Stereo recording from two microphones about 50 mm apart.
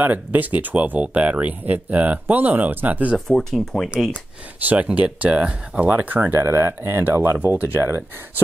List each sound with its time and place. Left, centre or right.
0.0 s speech: right
3.3 s speech: centre
4.6 s speech: right
5.9 s speech: right
6.3 s speech: right